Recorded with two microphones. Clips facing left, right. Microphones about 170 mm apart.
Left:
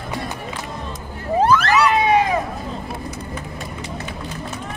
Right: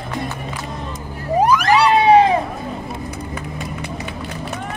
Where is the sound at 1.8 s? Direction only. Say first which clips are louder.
Right 4 dB; 30° right (ahead or behind).